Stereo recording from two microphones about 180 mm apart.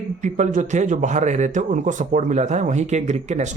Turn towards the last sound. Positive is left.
turn(degrees=-40)  # may be behind; listen again after turning